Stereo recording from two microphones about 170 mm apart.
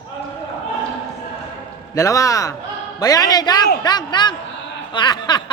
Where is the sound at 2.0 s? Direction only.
20° left (ahead or behind).